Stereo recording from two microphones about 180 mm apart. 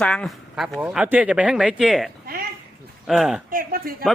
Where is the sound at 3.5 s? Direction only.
55° right (ahead or behind).